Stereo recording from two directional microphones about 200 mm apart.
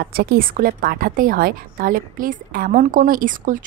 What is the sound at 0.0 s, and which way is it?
A woman's voice, 50° right (ahead or behind).